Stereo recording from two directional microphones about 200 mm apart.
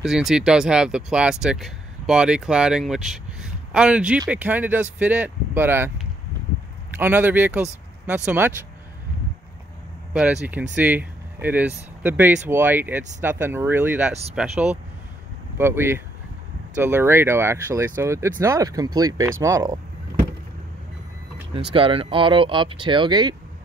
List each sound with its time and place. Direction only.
0.0 s speech: centre (ahead or behind)
7.0 s speech: 10° right (ahead or behind)
10.1 s speech: 5° right (ahead or behind)
21.5 s speech: 25° right (ahead or behind)